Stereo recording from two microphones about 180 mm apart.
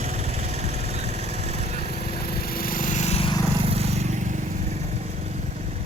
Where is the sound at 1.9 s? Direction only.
60° left (ahead or behind); by 3.3 s 35° left (ahead or behind).